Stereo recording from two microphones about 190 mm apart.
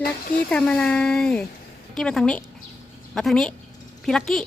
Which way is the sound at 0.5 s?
5° left (ahead or behind).